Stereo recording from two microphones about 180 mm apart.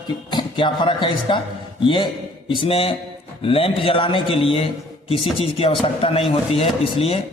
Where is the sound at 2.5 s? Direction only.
30° left (ahead or behind).